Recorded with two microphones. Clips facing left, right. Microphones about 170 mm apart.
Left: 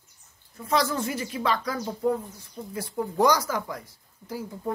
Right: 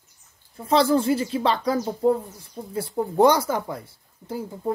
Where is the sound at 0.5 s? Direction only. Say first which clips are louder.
Right 6 dB; 30° right (ahead or behind).